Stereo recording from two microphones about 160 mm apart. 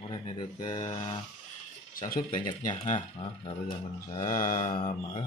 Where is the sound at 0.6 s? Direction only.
30° left (ahead or behind).